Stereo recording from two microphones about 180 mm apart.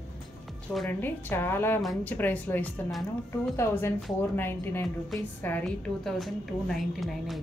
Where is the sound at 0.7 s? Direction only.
5° left (ahead or behind).